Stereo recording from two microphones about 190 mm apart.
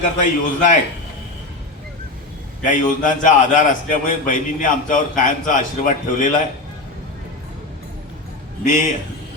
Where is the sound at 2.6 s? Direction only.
40° left (ahead or behind).